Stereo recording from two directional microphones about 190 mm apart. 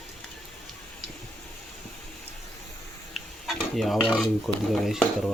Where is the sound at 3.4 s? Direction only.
Centre (ahead or behind).